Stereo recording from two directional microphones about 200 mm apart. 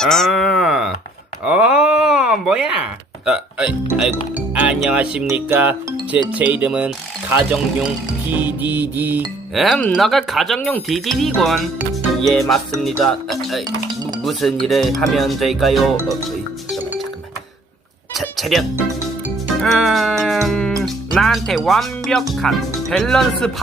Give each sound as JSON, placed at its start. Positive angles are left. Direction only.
{"t": 0.0, "sound": "wail", "side_deg": 0}
{"t": 1.5, "sound": "speech", "side_deg": -5}
{"t": 13.7, "sound": "speech", "side_deg": -20}
{"t": 14.3, "sound": "speech", "side_deg": 0}
{"t": 18.1, "sound": "speech", "side_deg": 0}
{"t": 19.6, "sound": "speech", "side_deg": 0}